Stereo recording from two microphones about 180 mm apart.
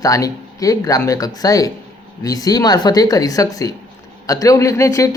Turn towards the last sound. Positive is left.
turn(degrees=15)  # may be behind; listen again after turning